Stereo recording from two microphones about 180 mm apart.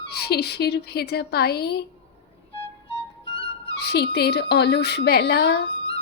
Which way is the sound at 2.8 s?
30° left (ahead or behind).